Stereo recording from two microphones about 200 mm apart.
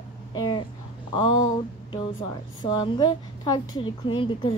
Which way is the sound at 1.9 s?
25° left (ahead or behind).